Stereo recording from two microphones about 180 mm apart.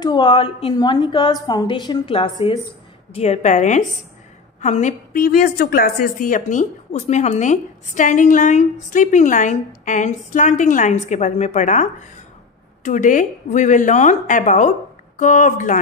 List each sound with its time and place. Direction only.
0.0 s a woman's voice: 25° left (ahead or behind); by 15.8 s 45° left (ahead or behind)